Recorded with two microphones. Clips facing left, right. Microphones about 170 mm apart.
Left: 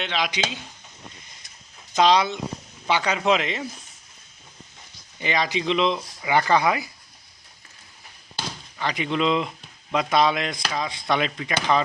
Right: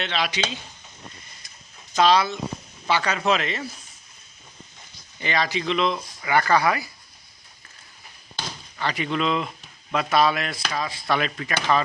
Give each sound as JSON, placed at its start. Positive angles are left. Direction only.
{"t": 0.0, "sound": "speech", "side_deg": 10}
{"t": 2.0, "sound": "speech", "side_deg": 20}
{"t": 5.2, "sound": "speech", "side_deg": 15}
{"t": 8.8, "sound": "speech", "side_deg": 15}